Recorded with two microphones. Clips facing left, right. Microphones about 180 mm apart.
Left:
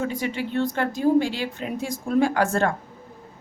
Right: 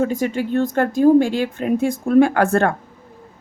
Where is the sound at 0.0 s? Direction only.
45° right (ahead or behind).